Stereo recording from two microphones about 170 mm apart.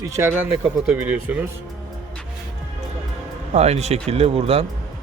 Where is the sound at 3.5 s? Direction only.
40° right (ahead or behind).